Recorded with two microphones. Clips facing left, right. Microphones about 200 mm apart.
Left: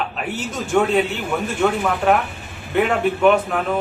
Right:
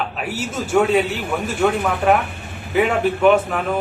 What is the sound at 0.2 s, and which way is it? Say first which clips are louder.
A man's voice: right 1 dB; 5° right (ahead or behind).